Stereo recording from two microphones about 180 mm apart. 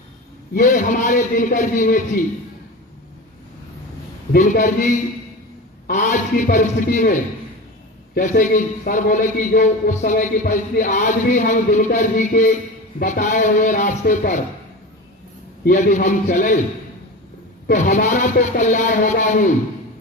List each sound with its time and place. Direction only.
0.5 s speech: 45° left (ahead or behind)
4.3 s speech: 45° left (ahead or behind)
15.6 s speech: 45° left (ahead or behind)
17.7 s speech: 45° left (ahead or behind)